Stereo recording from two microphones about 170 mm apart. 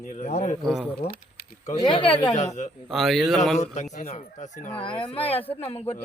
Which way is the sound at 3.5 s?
45° left (ahead or behind).